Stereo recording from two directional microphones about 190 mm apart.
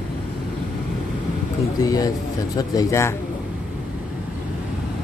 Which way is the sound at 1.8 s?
20° left (ahead or behind).